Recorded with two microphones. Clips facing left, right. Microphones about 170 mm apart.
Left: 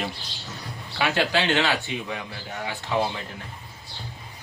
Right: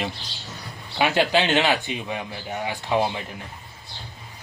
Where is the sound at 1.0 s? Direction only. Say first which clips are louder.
Right 3 dB; 20° right (ahead or behind).